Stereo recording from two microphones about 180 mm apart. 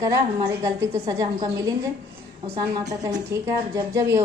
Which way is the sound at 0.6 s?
20° right (ahead or behind).